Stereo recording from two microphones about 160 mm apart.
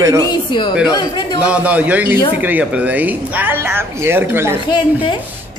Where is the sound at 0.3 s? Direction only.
30° left (ahead or behind).